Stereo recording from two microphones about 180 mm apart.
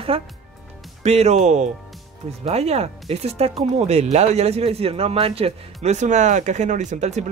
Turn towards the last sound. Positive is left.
turn(degrees=-40)  # may be behind; listen again after turning